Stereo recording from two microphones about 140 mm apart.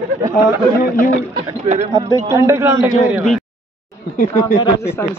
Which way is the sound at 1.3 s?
55° right (ahead or behind).